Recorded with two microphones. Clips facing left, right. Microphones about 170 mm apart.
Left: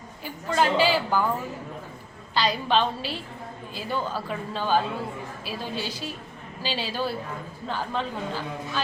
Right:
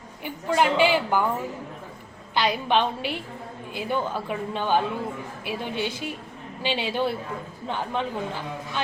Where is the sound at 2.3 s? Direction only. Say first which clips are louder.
Right 1 dB; 15° right (ahead or behind).